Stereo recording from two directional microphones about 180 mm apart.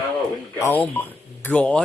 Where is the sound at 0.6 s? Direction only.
10° left (ahead or behind).